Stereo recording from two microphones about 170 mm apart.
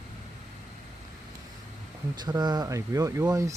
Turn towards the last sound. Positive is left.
turn(degrees=-20)  # may be behind; listen again after turning